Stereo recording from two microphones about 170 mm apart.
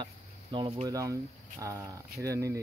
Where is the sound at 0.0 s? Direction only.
30° right (ahead or behind).